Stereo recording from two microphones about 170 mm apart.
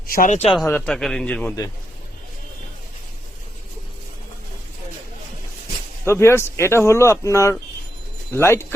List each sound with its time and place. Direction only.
0.1 s speech: 55° left (ahead or behind)
0.6 s speech: 10° left (ahead or behind)
6.1 s speech: 15° left (ahead or behind)